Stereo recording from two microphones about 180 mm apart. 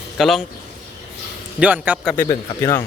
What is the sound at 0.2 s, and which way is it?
Speech, centre (ahead or behind).